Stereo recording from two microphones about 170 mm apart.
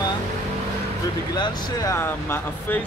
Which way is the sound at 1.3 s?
20° left (ahead or behind).